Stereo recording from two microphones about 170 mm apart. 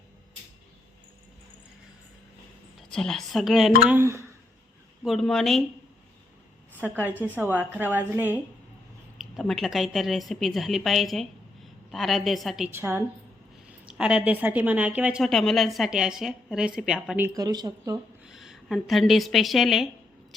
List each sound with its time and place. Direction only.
2.7 s a woman's voice: 5° left (ahead or behind)
3.8 s a woman's voice: 15° right (ahead or behind)
5.0 s a woman's voice: centre (ahead or behind)
6.8 s a woman's voice: 10° right (ahead or behind)
9.1 s a woman's voice: centre (ahead or behind)
12.7 s a woman's voice: 15° right (ahead or behind)
17.4 s speech: 25° right (ahead or behind)
18.3 s a woman's voice: centre (ahead or behind)